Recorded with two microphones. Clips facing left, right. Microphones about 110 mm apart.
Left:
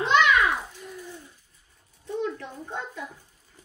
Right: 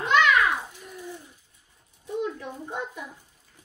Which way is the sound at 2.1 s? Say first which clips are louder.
Even; 15° right (ahead or behind).